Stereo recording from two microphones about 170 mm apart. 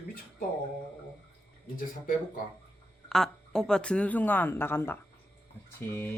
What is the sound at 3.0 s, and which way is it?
Speech, 5° left (ahead or behind).